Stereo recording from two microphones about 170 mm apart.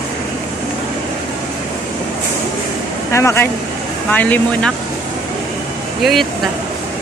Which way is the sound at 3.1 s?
15° left (ahead or behind).